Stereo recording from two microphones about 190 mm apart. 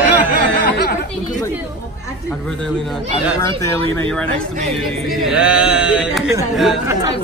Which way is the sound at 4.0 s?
5° left (ahead or behind).